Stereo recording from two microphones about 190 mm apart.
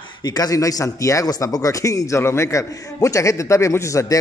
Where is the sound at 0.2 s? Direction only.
20° left (ahead or behind).